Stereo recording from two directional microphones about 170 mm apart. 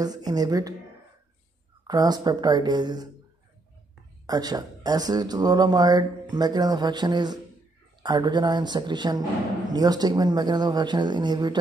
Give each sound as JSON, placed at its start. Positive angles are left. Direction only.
{"t": 0.0, "sound": "speech", "side_deg": -25}
{"t": 1.9, "sound": "speech", "side_deg": -25}
{"t": 4.3, "sound": "speech", "side_deg": -25}